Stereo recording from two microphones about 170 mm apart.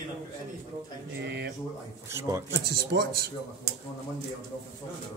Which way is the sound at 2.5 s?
80° right.